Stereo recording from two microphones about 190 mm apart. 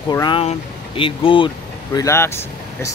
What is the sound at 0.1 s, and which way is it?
Speech, 25° left (ahead or behind).